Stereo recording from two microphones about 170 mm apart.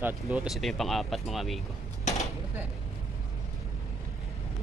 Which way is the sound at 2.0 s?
40° left (ahead or behind).